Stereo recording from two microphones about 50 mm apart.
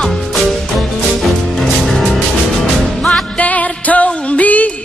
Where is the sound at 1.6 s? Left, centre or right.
Centre.